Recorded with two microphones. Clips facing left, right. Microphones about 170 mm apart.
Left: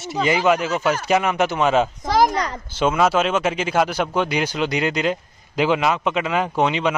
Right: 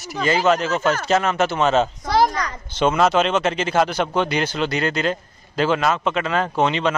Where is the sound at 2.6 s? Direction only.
5° left (ahead or behind).